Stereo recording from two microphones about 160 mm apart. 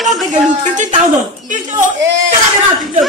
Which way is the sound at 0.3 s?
50° right (ahead or behind).